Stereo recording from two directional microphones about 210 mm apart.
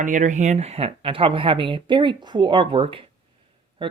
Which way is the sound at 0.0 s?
35° right (ahead or behind).